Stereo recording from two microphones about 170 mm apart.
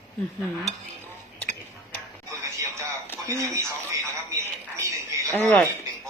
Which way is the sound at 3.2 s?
20° right (ahead or behind).